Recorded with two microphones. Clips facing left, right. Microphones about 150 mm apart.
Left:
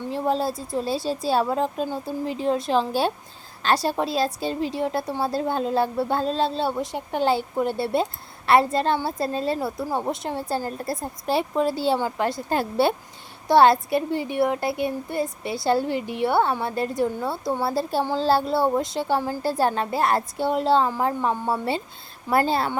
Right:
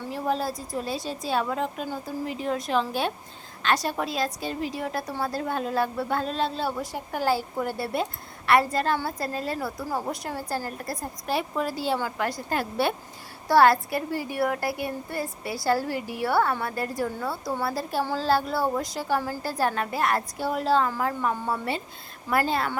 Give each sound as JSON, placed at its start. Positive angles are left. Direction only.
{"t": 0.1, "sound": "a woman's voice", "side_deg": 30}